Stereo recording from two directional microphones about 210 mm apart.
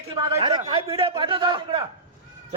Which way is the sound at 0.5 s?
25° right (ahead or behind).